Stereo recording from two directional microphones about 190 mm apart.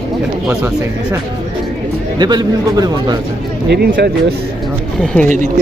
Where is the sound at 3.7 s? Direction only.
60° right (ahead or behind).